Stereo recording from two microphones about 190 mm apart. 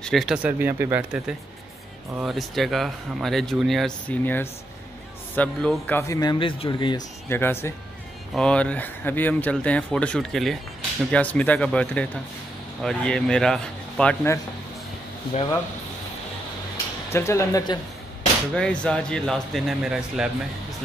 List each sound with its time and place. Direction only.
0.0 s speech: centre (ahead or behind)
5.9 s speech: 15° left (ahead or behind)
7.2 s speech: 10° left (ahead or behind)
17.1 s speech: 15° left (ahead or behind)
18.5 s speech: 5° left (ahead or behind)